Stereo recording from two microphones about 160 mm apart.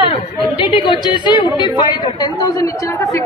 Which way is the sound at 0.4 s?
35° left (ahead or behind).